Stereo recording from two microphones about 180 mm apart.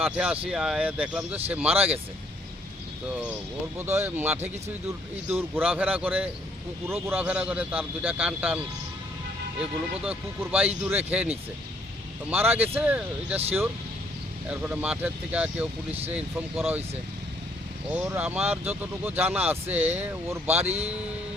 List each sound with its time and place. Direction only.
0.0 s speech: 5° right (ahead or behind)
3.1 s speech: 5° right (ahead or behind)
12.3 s speech: 10° right (ahead or behind)
17.9 s speech: 10° right (ahead or behind)
20.7 s a man's voice: 35° right (ahead or behind)